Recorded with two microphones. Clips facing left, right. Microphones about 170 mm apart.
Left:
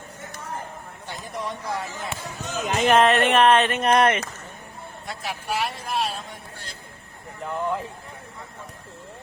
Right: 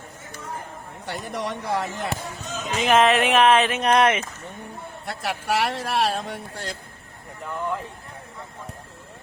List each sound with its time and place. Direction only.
1.0 s speech: 75° right (ahead or behind)
2.5 s speech: 65° left (ahead or behind)
2.8 s speech: centre (ahead or behind)
5.0 s speech: 65° right (ahead or behind); by 6.7 s 85° right